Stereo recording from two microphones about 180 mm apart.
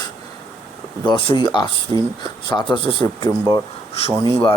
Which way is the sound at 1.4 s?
25° left (ahead or behind).